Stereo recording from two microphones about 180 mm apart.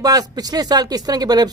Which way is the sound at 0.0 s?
20° right (ahead or behind).